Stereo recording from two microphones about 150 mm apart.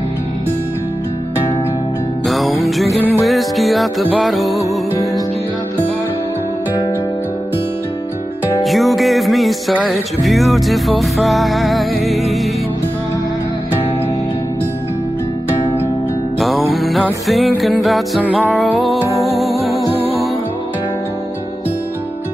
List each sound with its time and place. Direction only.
2.2 s music: centre (ahead or behind)
8.6 s music: centre (ahead or behind)
16.3 s music: centre (ahead or behind)
19.9 s music: 40° left (ahead or behind)